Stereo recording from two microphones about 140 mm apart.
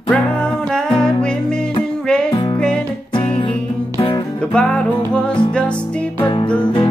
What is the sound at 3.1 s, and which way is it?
Music, 40° left (ahead or behind).